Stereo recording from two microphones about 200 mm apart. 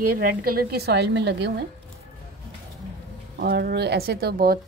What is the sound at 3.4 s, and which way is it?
A woman's voice, 50° right (ahead or behind).